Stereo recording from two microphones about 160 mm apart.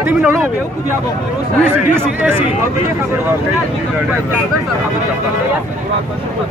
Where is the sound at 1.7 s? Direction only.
15° right (ahead or behind).